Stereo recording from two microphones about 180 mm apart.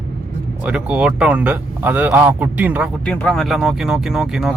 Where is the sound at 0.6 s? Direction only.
5° right (ahead or behind).